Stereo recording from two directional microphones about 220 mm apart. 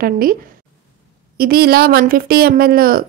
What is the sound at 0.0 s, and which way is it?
Speech, 40° right (ahead or behind).